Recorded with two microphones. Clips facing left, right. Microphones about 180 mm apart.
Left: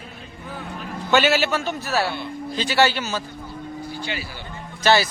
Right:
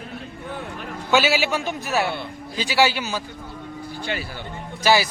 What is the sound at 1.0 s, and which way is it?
A man's voice, 10° right (ahead or behind).